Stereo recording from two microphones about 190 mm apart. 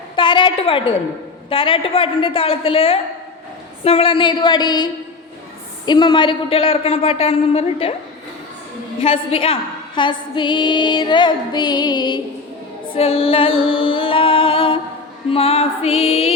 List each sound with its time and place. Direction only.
0.2 s a woman's voice: 25° left (ahead or behind)
9.0 s a woman's voice: 30° left (ahead or behind)
12.9 s music: 30° left (ahead or behind)